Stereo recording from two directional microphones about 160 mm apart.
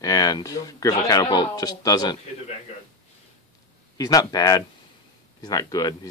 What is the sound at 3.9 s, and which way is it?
Speech, 20° left (ahead or behind).